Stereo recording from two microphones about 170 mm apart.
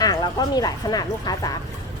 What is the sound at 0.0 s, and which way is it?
Speech, 20° left (ahead or behind).